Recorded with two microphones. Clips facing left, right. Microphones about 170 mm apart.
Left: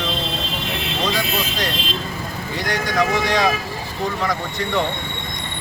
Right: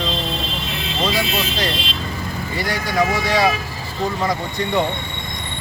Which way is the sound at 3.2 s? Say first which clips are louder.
Right 1 dB; 5° right (ahead or behind).